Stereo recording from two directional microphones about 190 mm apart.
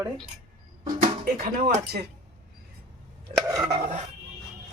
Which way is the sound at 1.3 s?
45° right (ahead or behind).